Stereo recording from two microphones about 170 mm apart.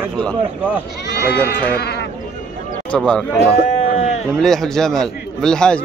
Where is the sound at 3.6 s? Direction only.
40° left (ahead or behind).